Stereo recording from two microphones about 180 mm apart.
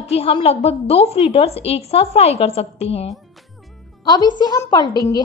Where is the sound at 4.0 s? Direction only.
25° left (ahead or behind).